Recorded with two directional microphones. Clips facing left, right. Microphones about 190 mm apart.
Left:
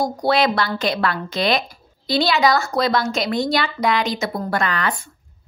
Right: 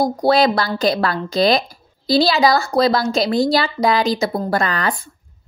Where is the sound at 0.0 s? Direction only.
35° right (ahead or behind).